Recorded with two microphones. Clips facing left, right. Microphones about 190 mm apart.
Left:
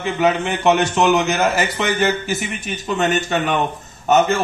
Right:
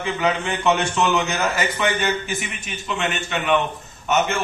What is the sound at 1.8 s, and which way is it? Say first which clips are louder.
A man's voice: left 3 dB; 40° left (ahead or behind).